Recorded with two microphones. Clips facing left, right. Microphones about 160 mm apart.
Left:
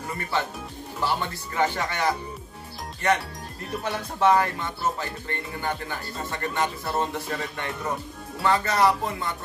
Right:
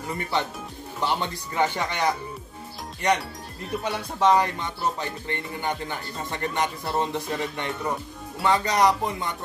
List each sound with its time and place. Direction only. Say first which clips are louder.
0.2 s speech: right 1 dB; 20° right (ahead or behind)
1.0 s music: right 1 dB; 20° right (ahead or behind)